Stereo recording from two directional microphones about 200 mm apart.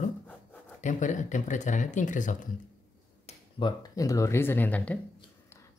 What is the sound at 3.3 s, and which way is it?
Speech, 25° left (ahead or behind).